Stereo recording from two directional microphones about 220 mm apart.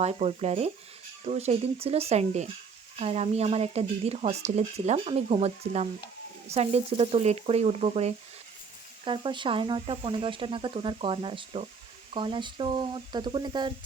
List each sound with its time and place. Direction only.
0.0 s speech: 30° right (ahead or behind)